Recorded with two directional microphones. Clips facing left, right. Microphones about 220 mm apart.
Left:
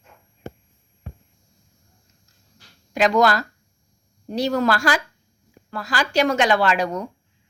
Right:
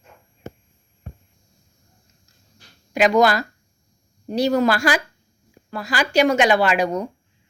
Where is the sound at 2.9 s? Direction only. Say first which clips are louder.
Right 2 dB; 10° right (ahead or behind).